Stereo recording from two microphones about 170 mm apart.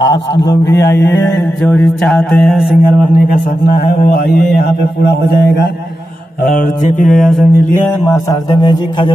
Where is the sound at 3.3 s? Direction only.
65° left (ahead or behind).